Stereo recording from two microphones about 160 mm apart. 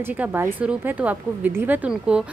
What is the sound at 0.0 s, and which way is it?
A woman's voice, 10° right (ahead or behind).